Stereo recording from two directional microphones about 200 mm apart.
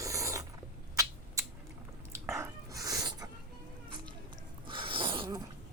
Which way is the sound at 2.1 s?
15° right (ahead or behind).